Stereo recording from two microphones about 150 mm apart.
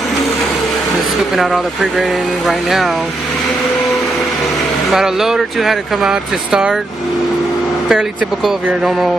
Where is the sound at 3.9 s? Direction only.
Centre (ahead or behind).